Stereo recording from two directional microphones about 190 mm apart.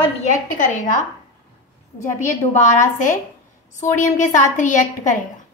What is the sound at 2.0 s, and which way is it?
A woman's voice, 40° left (ahead or behind).